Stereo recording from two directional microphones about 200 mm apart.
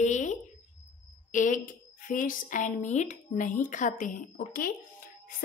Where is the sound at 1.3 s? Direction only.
40° left (ahead or behind).